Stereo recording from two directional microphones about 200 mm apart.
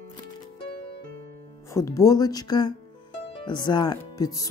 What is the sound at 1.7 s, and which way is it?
Speech, 15° left (ahead or behind).